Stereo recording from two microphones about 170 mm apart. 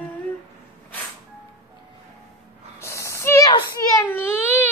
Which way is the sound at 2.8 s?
15° left (ahead or behind).